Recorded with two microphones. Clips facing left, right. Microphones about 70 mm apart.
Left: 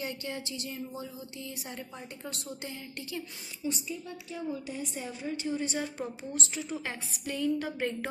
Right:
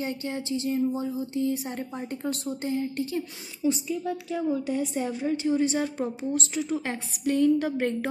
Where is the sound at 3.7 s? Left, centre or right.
Right.